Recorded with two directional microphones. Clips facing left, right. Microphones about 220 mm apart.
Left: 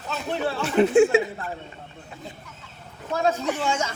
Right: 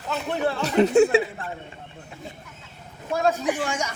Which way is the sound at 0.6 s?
40° right (ahead or behind).